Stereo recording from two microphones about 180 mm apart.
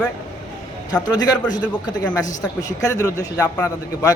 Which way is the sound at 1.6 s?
5° left (ahead or behind).